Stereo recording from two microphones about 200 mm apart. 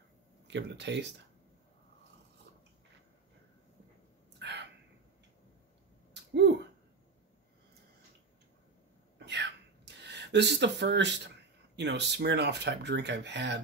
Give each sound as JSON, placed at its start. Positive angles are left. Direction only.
{"t": 0.5, "sound": "speech", "side_deg": -60}
{"t": 4.4, "sound": "crow", "side_deg": -60}
{"t": 6.1, "sound": "a sound", "side_deg": -60}
{"t": 9.2, "sound": "speech", "side_deg": -60}